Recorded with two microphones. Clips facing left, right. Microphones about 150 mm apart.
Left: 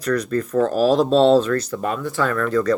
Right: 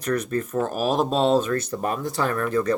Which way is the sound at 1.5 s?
25° right (ahead or behind).